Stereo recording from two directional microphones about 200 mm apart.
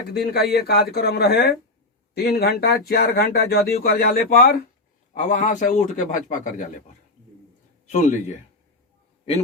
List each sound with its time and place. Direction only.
0.1 s speech: 50° left (ahead or behind); by 8.4 s 35° left (ahead or behind)